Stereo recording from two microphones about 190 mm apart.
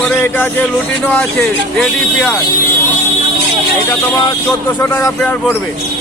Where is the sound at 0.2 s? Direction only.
10° left (ahead or behind).